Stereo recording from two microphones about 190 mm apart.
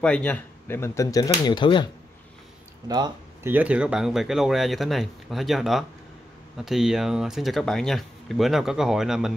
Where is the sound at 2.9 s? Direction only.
20° right (ahead or behind).